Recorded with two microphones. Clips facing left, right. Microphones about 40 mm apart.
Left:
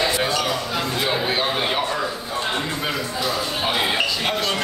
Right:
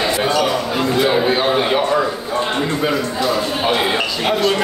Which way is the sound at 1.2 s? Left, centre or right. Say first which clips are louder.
Right 6 dB; centre.